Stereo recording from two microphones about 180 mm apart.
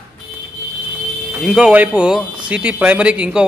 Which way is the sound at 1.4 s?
5° right (ahead or behind).